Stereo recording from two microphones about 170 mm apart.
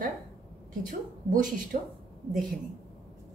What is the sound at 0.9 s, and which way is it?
Speech, 50° right (ahead or behind).